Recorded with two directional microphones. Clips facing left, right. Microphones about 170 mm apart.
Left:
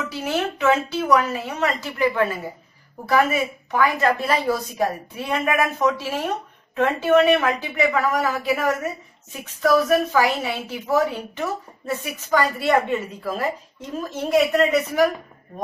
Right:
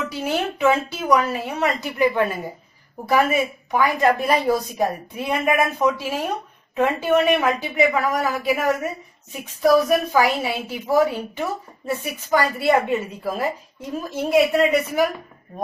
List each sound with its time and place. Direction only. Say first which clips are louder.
0.6 s a woman's voice: even; 15° right (ahead or behind)